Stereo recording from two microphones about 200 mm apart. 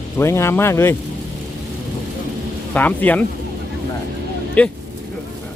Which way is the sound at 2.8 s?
10° left (ahead or behind).